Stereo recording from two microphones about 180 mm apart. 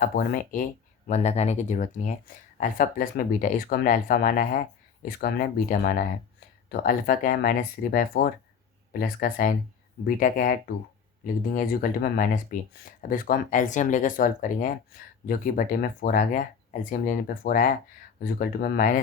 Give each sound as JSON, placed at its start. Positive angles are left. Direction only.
{"t": 0.0, "sound": "speech", "side_deg": 55}
{"t": 1.0, "sound": "speech", "side_deg": 40}